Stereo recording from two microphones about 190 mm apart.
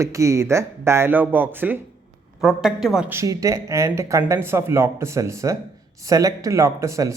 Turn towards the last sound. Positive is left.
turn(degrees=-15)  # may be behind; listen again after turning